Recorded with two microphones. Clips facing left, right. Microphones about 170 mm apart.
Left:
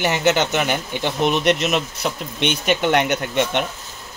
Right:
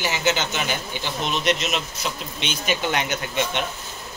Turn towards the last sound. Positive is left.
turn(degrees=60)  # may be behind; listen again after turning